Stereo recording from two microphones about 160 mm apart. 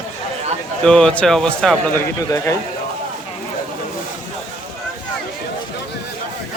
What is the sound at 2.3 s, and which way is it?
Speech, 20° left (ahead or behind).